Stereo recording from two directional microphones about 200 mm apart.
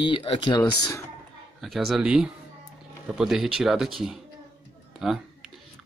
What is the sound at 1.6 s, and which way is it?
Speech, centre (ahead or behind).